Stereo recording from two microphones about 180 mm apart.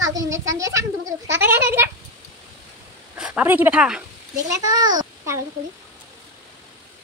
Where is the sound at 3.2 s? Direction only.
5° right (ahead or behind).